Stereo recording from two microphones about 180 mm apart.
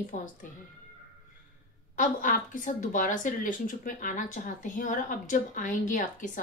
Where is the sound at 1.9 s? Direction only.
45° left (ahead or behind).